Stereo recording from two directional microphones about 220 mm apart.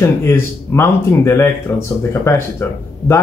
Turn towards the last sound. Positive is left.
turn(degrees=10)  # may be behind; listen again after turning